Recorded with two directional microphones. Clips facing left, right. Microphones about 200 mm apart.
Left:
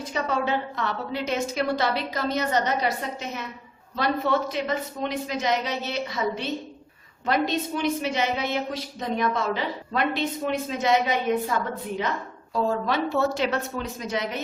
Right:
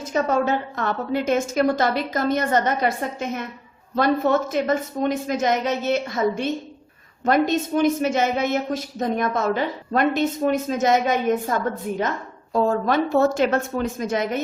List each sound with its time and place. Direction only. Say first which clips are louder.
0.0 s a man's voice: right 6 dB; 45° right (ahead or behind)